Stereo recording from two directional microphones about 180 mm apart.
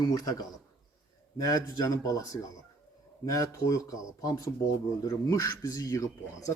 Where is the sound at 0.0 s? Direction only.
20° left (ahead or behind).